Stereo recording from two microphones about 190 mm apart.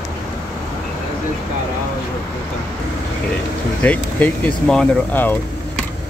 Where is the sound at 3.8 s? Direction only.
10° left (ahead or behind).